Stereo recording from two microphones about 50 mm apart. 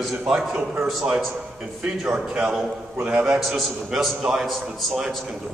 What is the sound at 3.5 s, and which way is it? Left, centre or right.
Speech, centre.